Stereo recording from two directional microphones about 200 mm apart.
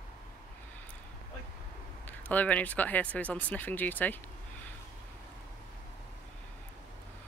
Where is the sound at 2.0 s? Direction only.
10° left (ahead or behind).